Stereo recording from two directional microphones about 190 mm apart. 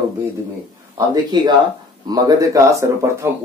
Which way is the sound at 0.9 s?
20° right (ahead or behind).